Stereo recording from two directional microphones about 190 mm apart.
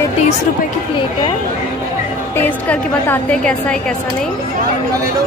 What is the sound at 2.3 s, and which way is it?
A woman's voice, 10° left (ahead or behind).